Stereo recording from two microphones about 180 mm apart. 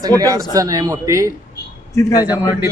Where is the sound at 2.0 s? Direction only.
20° left (ahead or behind).